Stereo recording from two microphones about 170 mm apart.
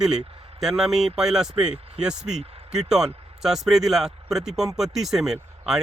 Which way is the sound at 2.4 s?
35° right (ahead or behind).